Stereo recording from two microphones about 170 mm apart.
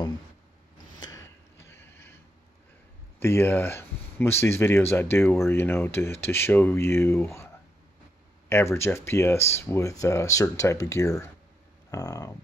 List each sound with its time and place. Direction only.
0.9 s a sound: 20° left (ahead or behind)
3.2 s speech: 15° left (ahead or behind)
8.5 s speech: 15° left (ahead or behind)